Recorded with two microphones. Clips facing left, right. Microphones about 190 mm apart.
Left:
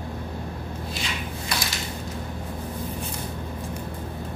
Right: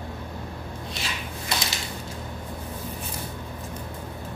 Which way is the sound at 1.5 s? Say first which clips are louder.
Right 1 dB; 25° right (ahead or behind).